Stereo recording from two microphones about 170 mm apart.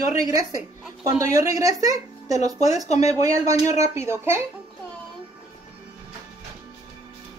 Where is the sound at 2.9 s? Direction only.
40° left (ahead or behind).